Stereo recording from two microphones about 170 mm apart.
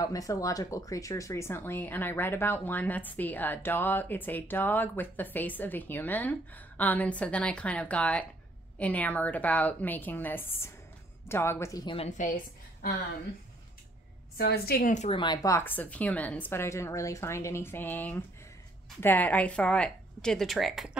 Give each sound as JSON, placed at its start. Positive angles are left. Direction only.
{"t": 0.0, "sound": "speech", "side_deg": 20}
{"t": 14.3, "sound": "a woman's voice", "side_deg": 65}
{"t": 14.9, "sound": "speech", "side_deg": 45}
{"t": 15.1, "sound": "a woman's voice", "side_deg": 25}